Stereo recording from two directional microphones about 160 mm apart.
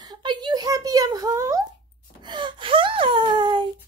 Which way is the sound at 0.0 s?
25° right (ahead or behind).